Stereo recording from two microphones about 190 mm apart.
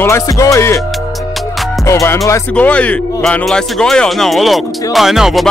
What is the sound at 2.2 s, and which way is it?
Speech, 10° left (ahead or behind).